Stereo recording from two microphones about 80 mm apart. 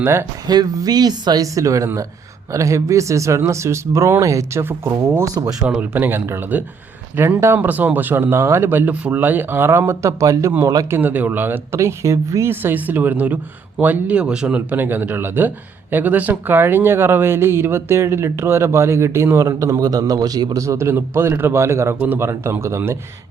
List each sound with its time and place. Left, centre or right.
0.0 s speech: right
0.4 s speech: right
5.6 s speech: centre; by 10.5 s right
10.9 s speech: right
12.5 s speech: right